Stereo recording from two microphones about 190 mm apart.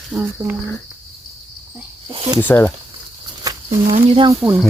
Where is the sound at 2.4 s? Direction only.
10° left (ahead or behind).